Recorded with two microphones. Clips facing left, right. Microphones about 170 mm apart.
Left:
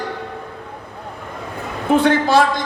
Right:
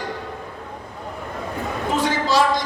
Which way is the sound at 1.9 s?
60° left (ahead or behind).